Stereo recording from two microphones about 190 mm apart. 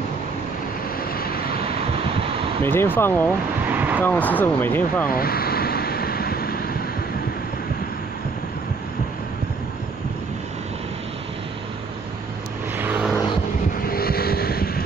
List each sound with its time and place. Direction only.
1.1 s vehicle: 50° left (ahead or behind)
2.6 s speech: 10° left (ahead or behind)
3.7 s vehicle: 10° right (ahead or behind)
4.0 s speech: 10° left (ahead or behind)
5.0 s vehicle: 50° left (ahead or behind)
12.7 s vehicle: 10° right (ahead or behind)
13.8 s vehicle: 50° left (ahead or behind)